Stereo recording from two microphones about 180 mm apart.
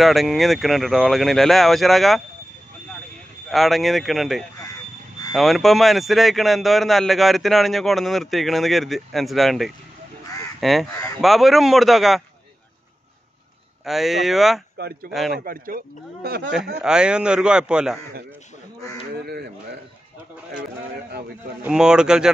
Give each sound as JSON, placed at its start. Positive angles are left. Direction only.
{"t": 0.0, "sound": "a man's voice", "side_deg": 0}
{"t": 3.4, "sound": "a man's voice", "side_deg": 0}
{"t": 13.8, "sound": "a man's voice", "side_deg": 0}
{"t": 15.4, "sound": "speech", "side_deg": -50}
{"t": 16.8, "sound": "a man's voice", "side_deg": -5}
{"t": 21.6, "sound": "a man's voice", "side_deg": -5}